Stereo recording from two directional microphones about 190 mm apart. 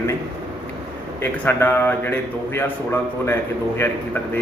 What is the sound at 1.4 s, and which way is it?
Speech, 10° left (ahead or behind).